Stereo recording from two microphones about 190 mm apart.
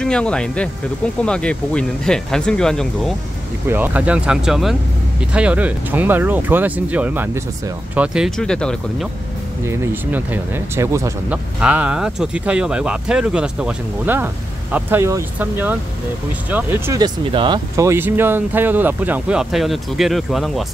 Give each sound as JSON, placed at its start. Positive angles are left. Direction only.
{"t": 0.0, "sound": "speech", "side_deg": 5}
{"t": 3.6, "sound": "speech", "side_deg": -10}
{"t": 9.7, "sound": "speech", "side_deg": -10}